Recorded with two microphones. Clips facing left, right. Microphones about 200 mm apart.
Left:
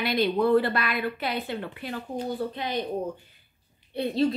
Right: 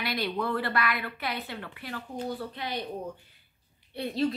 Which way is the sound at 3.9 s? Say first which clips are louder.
Left 4 dB; 25° left (ahead or behind).